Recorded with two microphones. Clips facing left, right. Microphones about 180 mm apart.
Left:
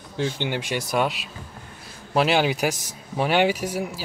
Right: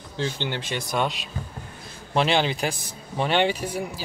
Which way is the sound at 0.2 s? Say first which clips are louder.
Left 2 dB; 10° left (ahead or behind).